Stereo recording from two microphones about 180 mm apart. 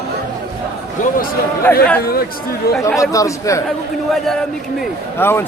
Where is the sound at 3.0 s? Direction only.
20° left (ahead or behind).